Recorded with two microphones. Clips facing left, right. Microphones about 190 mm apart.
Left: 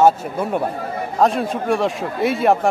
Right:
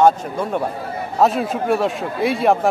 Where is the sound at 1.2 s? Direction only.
5° right (ahead or behind).